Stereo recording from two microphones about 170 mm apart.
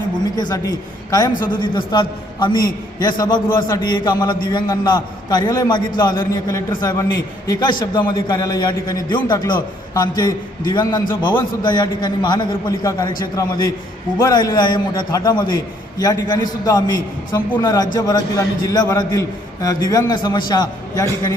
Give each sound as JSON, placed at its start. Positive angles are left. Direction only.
{"t": 0.3, "sound": "a man's voice", "side_deg": 25}